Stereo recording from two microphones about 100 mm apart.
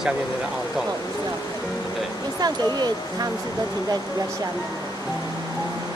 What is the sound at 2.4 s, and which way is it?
Speech, 45° right (ahead or behind).